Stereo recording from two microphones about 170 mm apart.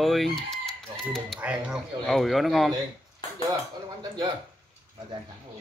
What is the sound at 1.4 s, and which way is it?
Speech, 5° right (ahead or behind).